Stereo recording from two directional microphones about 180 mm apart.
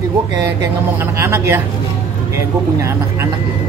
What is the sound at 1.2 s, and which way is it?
Speech, 15° right (ahead or behind).